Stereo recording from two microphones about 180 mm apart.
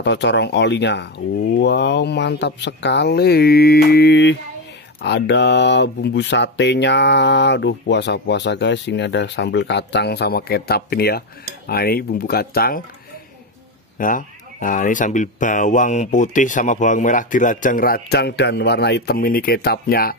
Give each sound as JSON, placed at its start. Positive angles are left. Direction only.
{"t": 0.0, "sound": "speech", "side_deg": 75}
{"t": 13.9, "sound": "speech", "side_deg": 50}